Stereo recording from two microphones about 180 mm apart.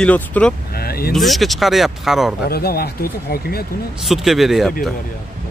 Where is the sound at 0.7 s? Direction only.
55° left (ahead or behind).